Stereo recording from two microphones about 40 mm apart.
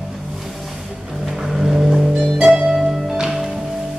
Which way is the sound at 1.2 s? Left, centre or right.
Centre.